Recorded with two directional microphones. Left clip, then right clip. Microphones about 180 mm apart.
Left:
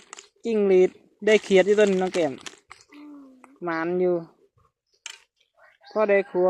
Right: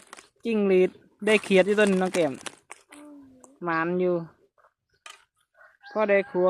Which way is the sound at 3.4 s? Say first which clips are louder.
Right 1 dB; 10° right (ahead or behind).